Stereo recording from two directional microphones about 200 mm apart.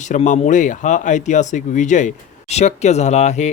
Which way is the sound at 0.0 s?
35° left (ahead or behind).